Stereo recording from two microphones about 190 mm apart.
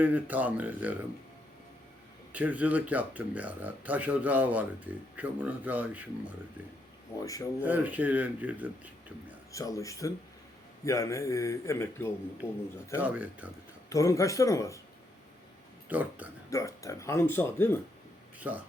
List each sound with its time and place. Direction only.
0.0 s speech: 10° right (ahead or behind)
2.3 s speech: 10° right (ahead or behind)
7.6 s speech: 10° right (ahead or behind)
9.5 s speech: 15° left (ahead or behind)
13.0 s speech: 10° right (ahead or behind)
13.9 s speech: 15° left (ahead or behind)
15.9 s speech: 10° right (ahead or behind)
16.5 s speech: 15° left (ahead or behind)
18.3 s speech: 10° right (ahead or behind)